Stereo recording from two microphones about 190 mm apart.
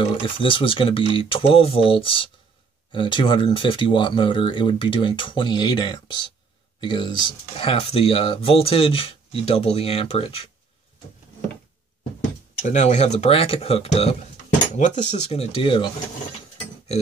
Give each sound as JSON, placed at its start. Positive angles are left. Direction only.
{"t": 0.4, "sound": "speech", "side_deg": 25}
{"t": 12.6, "sound": "speech", "side_deg": 40}